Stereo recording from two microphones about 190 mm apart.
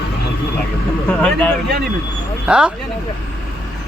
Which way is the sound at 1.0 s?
5° left (ahead or behind).